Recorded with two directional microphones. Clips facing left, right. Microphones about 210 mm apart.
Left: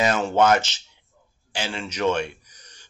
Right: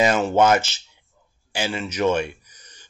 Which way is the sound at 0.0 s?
10° right (ahead or behind).